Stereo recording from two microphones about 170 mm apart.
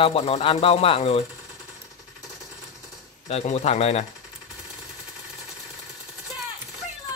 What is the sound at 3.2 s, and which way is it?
Speech, 40° left (ahead or behind).